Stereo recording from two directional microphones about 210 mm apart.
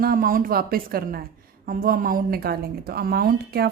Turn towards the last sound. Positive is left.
turn(degrees=-45)  # may be behind; listen again after turning